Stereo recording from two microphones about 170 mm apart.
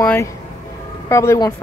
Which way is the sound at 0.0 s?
15° left (ahead or behind).